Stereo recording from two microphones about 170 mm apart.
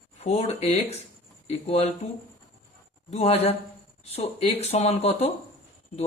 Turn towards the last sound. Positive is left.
turn(degrees=35)  # may be behind; listen again after turning